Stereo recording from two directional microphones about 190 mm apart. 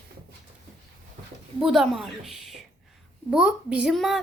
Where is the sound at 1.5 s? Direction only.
Centre (ahead or behind).